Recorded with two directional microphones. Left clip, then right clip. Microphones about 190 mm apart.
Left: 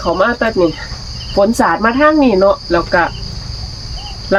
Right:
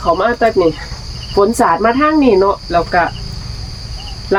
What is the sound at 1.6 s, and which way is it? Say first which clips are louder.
Cricket: even; 15° left (ahead or behind).